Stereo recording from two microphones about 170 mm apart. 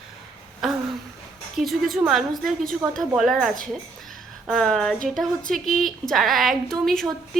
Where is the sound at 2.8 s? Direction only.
20° right (ahead or behind).